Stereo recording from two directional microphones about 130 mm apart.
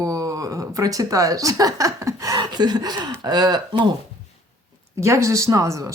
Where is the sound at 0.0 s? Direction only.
25° right (ahead or behind).